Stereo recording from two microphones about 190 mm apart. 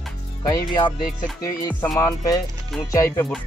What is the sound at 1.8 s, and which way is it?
Speech, 10° left (ahead or behind).